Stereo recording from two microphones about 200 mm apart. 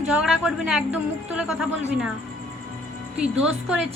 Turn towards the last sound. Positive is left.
turn(degrees=-5)  # may be behind; listen again after turning